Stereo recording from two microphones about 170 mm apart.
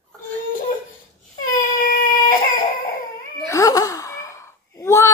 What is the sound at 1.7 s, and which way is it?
Baby cry, 55° left (ahead or behind).